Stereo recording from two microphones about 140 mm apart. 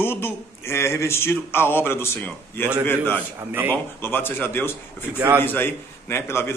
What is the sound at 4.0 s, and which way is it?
A man's voice, 15° left (ahead or behind).